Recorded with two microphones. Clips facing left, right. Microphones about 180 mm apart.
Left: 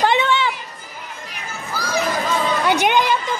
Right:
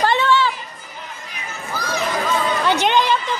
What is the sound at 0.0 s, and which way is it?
Children playing, 15° left (ahead or behind).